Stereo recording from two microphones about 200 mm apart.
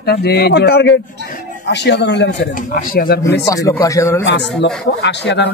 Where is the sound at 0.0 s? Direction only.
55° left (ahead or behind).